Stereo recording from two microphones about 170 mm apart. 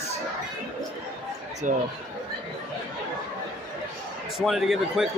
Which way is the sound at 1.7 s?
50° right (ahead or behind).